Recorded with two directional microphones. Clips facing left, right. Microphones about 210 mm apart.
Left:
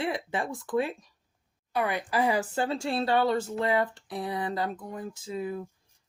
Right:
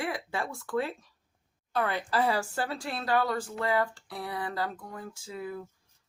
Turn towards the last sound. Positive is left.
turn(degrees=20)  # may be behind; listen again after turning